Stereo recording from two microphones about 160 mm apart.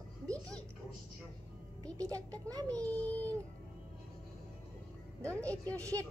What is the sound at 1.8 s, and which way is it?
Speech, 20° right (ahead or behind).